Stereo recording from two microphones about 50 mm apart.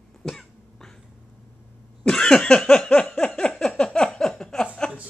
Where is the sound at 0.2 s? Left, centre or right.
Centre.